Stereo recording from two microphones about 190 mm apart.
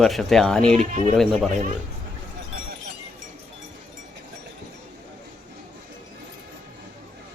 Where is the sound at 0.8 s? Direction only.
40° right (ahead or behind).